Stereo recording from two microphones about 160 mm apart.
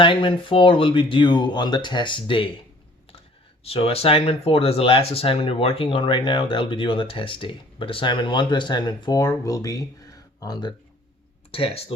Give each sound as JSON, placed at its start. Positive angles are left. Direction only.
{"t": 0.0, "sound": "speech", "side_deg": 30}
{"t": 3.6, "sound": "speech", "side_deg": 35}